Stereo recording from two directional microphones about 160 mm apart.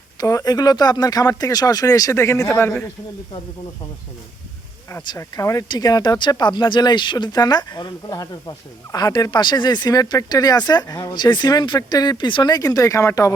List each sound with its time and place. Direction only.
0.2 s speech: 20° left (ahead or behind)
5.0 s speech: 20° left (ahead or behind)